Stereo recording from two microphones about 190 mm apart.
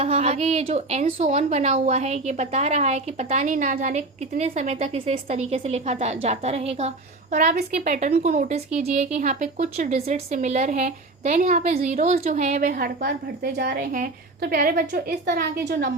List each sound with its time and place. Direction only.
0.0 s a woman's voice: 35° right (ahead or behind); by 15.9 s 55° right (ahead or behind)